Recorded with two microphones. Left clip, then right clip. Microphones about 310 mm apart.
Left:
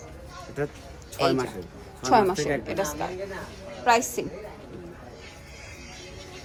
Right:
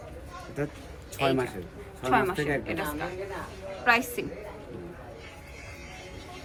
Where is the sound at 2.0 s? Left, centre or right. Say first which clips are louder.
Left 5 dB; centre.